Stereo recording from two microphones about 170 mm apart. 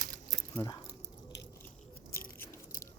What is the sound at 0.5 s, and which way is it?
Speech, 20° left (ahead or behind).